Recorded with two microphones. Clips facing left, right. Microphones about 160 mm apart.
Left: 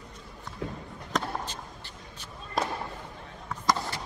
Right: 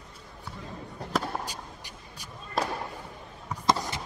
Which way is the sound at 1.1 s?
10° right (ahead or behind).